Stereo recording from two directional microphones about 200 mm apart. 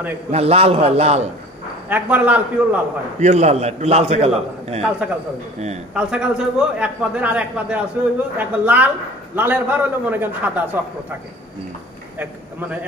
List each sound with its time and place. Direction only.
0.3 s a man's voice: 30° right (ahead or behind)
1.9 s a man's voice: 10° right (ahead or behind)
3.2 s a man's voice: 35° right (ahead or behind)
5.9 s a man's voice: 5° right (ahead or behind)